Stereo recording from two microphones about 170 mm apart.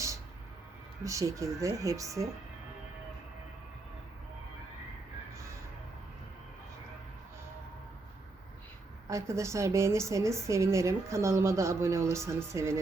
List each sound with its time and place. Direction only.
1.0 s speech: 20° right (ahead or behind)
9.0 s a woman's voice: 15° right (ahead or behind)